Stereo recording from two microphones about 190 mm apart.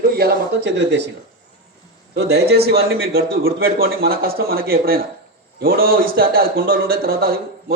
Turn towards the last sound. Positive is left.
turn(degrees=-50)  # may be behind; listen again after turning